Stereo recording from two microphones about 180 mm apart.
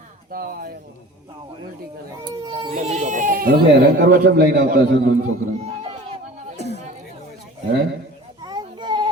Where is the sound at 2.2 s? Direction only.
25° right (ahead or behind).